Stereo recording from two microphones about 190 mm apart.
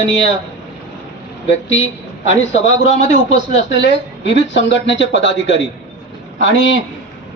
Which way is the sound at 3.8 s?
70° left (ahead or behind).